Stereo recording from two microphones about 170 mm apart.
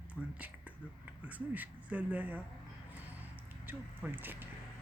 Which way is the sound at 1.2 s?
10° right (ahead or behind).